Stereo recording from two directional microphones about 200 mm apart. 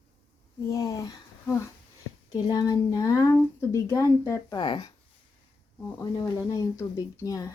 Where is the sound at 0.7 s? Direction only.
20° left (ahead or behind).